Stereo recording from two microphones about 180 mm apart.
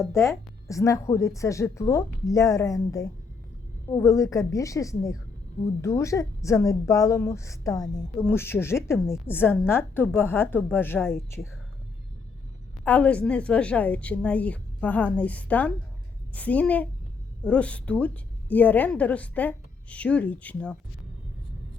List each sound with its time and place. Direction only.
0.1 s a woman's voice: 15° left (ahead or behind)
12.8 s a woman's voice: 10° left (ahead or behind)